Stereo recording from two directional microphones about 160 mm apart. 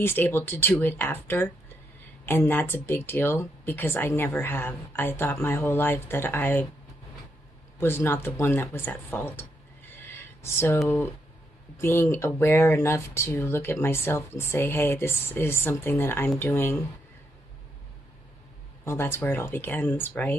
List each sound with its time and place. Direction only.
0.0 s speech: 15° left (ahead or behind)
7.8 s speech: 15° left (ahead or behind)
9.9 s a sound: 15° left (ahead or behind)
11.8 s speech: 15° left (ahead or behind)
18.9 s speech: 15° left (ahead or behind)